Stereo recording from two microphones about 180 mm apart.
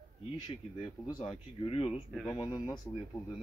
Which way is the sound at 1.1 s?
25° left (ahead or behind).